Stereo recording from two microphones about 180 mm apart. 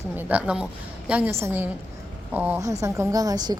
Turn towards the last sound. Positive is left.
turn(degrees=-20)  # may be behind; listen again after turning